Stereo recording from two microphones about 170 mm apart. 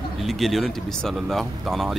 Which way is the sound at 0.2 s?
Centre (ahead or behind).